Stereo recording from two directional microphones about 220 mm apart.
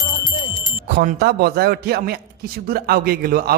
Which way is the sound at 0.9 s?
45° right (ahead or behind).